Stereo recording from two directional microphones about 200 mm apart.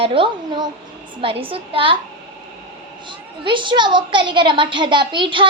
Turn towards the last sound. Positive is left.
turn(degrees=-25)  # may be behind; listen again after turning